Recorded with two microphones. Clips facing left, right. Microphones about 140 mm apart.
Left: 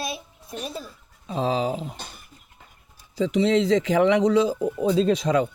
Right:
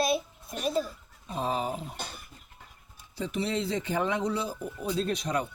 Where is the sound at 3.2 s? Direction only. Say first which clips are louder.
Left 10 dB; 90° left.